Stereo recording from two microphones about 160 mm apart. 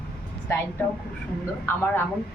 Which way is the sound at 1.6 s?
15° left (ahead or behind).